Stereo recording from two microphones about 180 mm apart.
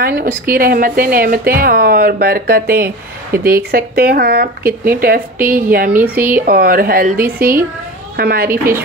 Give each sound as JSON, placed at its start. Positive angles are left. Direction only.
{"t": 0.0, "sound": "speech", "side_deg": -55}
{"t": 5.9, "sound": "speech", "side_deg": -10}
{"t": 6.2, "sound": "speech", "side_deg": -55}
{"t": 8.5, "sound": "speech", "side_deg": -10}